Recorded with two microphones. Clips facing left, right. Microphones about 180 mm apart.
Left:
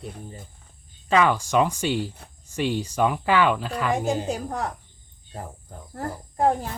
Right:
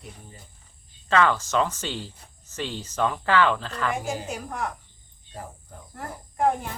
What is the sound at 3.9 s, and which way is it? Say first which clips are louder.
Speech: left 6 dB; 35° left (ahead or behind).